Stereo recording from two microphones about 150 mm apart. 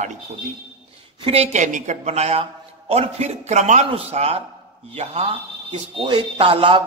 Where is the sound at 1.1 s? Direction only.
40° right (ahead or behind).